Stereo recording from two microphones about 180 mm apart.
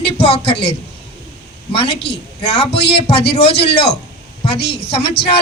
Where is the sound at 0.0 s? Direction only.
65° left (ahead or behind).